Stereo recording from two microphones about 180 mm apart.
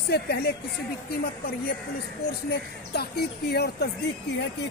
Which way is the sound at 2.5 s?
65° left (ahead or behind).